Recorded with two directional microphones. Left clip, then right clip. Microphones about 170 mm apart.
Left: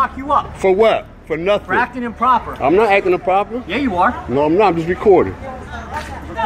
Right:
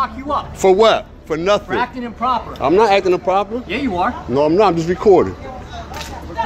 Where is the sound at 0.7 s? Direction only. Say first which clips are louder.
Right 1 dB; 25° right (ahead or behind).